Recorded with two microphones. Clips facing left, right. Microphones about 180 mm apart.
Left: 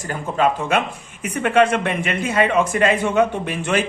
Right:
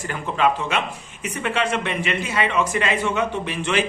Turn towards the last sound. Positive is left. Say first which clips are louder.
# left 2 dB
turn(degrees=50)  # may be behind; listen again after turning